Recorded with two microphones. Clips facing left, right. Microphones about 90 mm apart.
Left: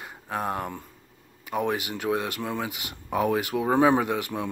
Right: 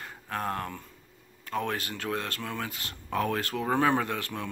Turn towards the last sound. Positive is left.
turn(degrees=15)  # may be behind; listen again after turning